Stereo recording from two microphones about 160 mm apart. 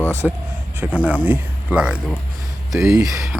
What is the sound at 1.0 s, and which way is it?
Speech, 10° right (ahead or behind).